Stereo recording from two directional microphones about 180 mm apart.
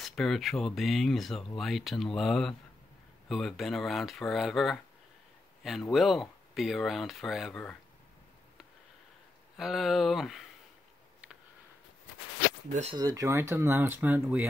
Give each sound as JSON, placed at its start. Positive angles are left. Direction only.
{"t": 0.0, "sound": "speech", "side_deg": 0}
{"t": 9.6, "sound": "speech", "side_deg": 0}
{"t": 12.9, "sound": "speech", "side_deg": -20}